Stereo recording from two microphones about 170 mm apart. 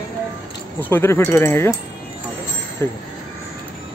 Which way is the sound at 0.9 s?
15° left (ahead or behind).